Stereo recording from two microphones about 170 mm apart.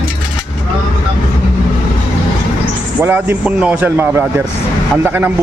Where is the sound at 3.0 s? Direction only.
10° right (ahead or behind).